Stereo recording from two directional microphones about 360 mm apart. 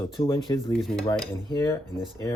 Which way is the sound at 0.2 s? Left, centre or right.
Centre.